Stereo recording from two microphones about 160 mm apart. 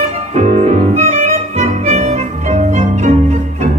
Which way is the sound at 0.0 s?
45° right (ahead or behind).